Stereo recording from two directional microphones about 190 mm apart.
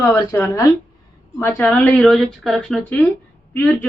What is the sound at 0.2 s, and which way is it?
A woman's voice, 15° left (ahead or behind).